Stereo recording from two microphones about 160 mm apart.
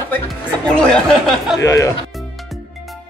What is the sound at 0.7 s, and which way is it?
Speech, 5° left (ahead or behind).